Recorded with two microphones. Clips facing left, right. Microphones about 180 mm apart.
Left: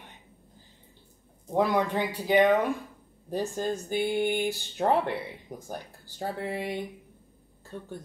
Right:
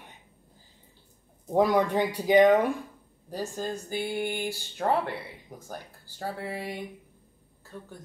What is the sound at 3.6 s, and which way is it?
Speech, 20° left (ahead or behind).